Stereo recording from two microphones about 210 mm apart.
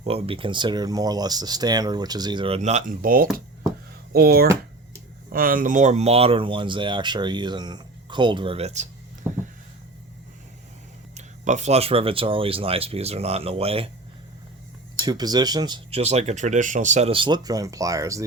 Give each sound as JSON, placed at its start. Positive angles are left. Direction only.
{"t": 0.0, "sound": "speech", "side_deg": -25}
{"t": 9.2, "sound": "a sound", "side_deg": -10}
{"t": 11.1, "sound": "speech", "side_deg": -35}
{"t": 14.9, "sound": "speech", "side_deg": -20}